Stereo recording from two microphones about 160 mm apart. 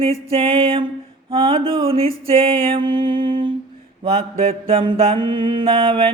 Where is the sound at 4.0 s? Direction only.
40° right (ahead or behind).